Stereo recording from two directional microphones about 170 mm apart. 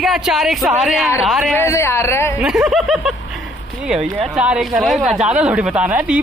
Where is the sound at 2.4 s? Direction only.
Centre (ahead or behind).